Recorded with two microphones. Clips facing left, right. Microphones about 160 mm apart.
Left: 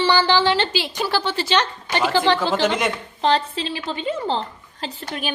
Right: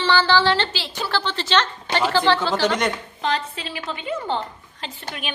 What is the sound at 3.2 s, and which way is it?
A woman's voice, 30° left (ahead or behind).